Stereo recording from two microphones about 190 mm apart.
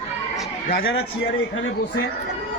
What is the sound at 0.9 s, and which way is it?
Speech, 85° left.